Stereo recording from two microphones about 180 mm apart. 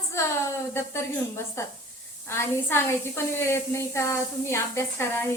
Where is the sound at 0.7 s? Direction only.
15° left (ahead or behind).